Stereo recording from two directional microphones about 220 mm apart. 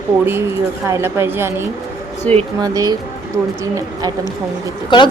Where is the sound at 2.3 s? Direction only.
5° left (ahead or behind).